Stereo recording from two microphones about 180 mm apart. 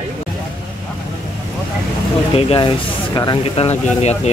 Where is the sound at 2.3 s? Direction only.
30° left (ahead or behind).